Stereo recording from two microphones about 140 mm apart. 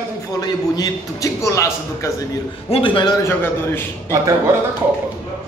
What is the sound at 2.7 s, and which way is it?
Speech, 40° left (ahead or behind).